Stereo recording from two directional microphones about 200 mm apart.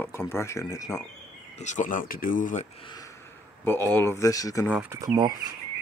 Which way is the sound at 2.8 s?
20° left (ahead or behind).